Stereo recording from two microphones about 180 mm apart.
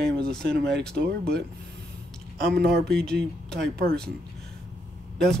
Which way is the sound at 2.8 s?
5° left (ahead or behind).